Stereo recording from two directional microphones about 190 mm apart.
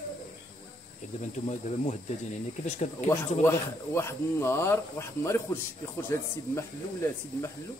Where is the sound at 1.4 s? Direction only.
35° left (ahead or behind).